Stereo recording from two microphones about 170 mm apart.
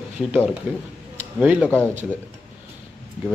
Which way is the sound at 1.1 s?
10° right (ahead or behind).